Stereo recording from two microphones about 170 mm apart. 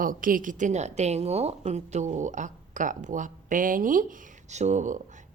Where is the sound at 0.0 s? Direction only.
55° right (ahead or behind).